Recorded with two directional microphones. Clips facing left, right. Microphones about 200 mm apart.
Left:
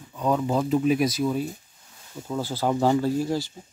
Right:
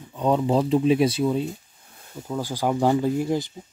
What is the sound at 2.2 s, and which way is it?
Speech, 10° right (ahead or behind).